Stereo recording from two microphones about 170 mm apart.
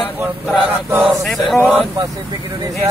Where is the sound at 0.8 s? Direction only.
10° right (ahead or behind).